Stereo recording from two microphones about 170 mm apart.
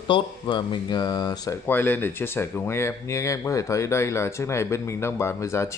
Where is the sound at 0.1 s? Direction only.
30° left (ahead or behind).